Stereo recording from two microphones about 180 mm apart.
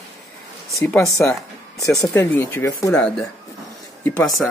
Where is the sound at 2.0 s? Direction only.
15° left (ahead or behind).